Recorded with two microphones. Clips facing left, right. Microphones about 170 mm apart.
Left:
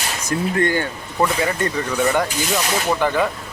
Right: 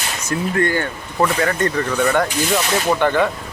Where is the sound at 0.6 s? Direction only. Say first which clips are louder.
Even; 15° left (ahead or behind).